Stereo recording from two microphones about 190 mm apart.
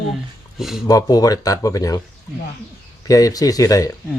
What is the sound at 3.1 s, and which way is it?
Speech, 20° left (ahead or behind).